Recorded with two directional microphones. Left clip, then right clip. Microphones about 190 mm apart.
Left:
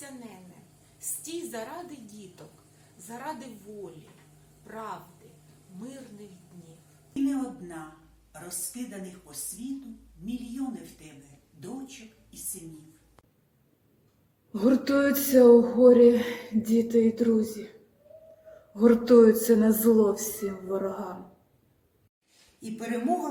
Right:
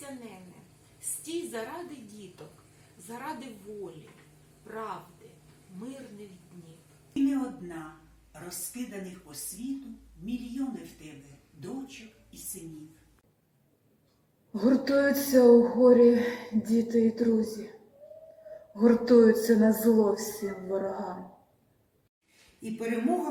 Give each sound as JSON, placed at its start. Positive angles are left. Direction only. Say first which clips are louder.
{"t": 1.5, "sound": "a woman's voice", "louder": "even", "side_deg": 15}
{"t": 4.6, "sound": "speech", "louder": "right 1 dB", "side_deg": 15}
{"t": 7.2, "sound": "a woman's voice", "louder": "right 1 dB", "side_deg": 0}
{"t": 14.5, "sound": "speech", "louder": "left 1 dB", "side_deg": 15}
{"t": 18.8, "sound": "speech", "louder": "left 2 dB", "side_deg": 15}
{"t": 22.6, "sound": "a woman's voice", "louder": "even", "side_deg": 0}